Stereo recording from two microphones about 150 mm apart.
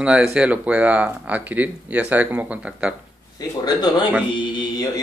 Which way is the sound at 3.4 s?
25° left (ahead or behind).